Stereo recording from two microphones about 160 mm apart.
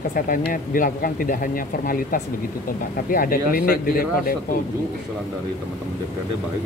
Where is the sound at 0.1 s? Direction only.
60° left (ahead or behind).